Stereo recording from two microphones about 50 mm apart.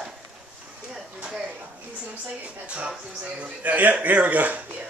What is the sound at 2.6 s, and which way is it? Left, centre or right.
A man's voice, right.